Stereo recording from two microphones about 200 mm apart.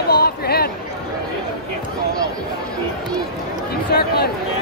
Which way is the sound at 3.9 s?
50° left (ahead or behind).